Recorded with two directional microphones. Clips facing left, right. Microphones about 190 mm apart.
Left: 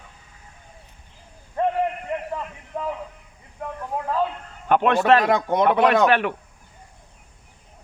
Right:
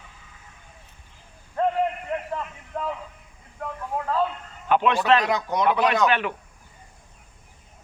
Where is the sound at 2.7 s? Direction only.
10° left (ahead or behind).